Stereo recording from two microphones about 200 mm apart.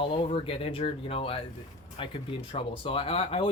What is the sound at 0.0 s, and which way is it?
Speech, 25° left (ahead or behind).